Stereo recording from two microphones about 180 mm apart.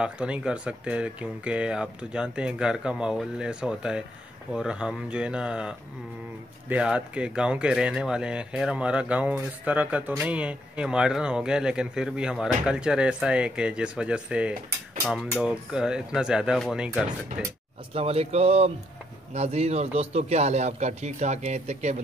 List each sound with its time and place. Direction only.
0.0 s speech: 5° right (ahead or behind)
17.9 s a man's voice: 35° right (ahead or behind)